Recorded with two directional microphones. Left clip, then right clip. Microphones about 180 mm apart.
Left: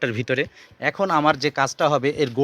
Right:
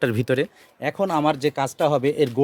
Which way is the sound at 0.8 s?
15° right (ahead or behind).